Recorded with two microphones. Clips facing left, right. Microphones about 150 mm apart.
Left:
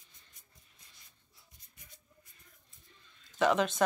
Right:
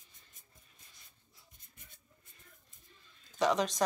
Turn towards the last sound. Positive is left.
turn(degrees=5)  # may be behind; listen again after turning